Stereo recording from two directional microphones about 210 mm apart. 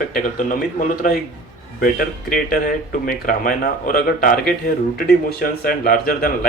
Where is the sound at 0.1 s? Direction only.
40° left (ahead or behind).